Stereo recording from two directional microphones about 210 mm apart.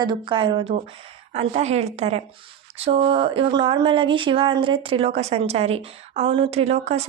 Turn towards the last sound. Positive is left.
turn(degrees=-30)  # may be behind; listen again after turning